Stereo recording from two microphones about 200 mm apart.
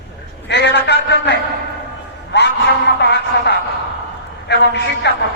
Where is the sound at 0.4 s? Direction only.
60° left (ahead or behind).